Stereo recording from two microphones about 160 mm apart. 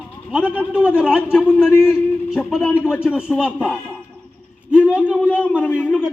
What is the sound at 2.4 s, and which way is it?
A man's voice, centre (ahead or behind).